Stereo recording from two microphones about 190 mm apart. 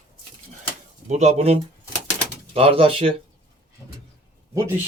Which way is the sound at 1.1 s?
35° right (ahead or behind).